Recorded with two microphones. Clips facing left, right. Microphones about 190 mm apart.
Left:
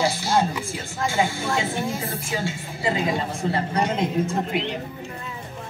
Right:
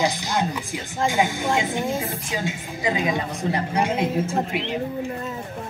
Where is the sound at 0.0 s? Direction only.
15° right (ahead or behind).